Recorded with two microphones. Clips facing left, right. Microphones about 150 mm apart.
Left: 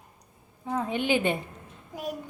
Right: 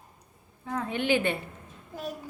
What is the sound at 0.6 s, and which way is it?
Speech, 15° left (ahead or behind).